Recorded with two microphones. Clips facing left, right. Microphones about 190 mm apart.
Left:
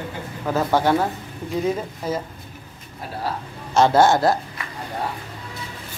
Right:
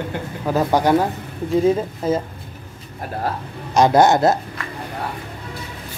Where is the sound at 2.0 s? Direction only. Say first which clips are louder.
Right 6 dB; 25° right (ahead or behind).